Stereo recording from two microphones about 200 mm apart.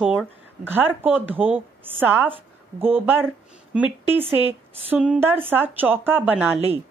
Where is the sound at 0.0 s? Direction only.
5° right (ahead or behind).